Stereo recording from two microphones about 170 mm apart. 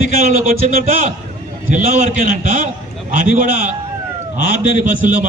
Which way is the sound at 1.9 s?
50° right (ahead or behind).